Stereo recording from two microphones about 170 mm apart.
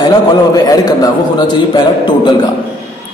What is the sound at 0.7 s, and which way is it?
A man's voice, 20° left (ahead or behind).